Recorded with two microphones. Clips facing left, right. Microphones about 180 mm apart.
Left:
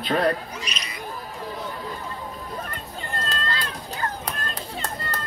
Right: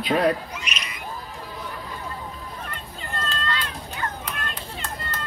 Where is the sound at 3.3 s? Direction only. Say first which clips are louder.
Even; 35° left (ahead or behind).